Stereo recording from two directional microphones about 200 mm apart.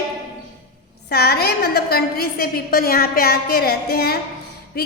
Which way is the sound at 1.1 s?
50° left (ahead or behind).